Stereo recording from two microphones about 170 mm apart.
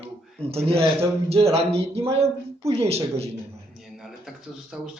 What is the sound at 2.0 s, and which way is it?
Speech, 35° right (ahead or behind).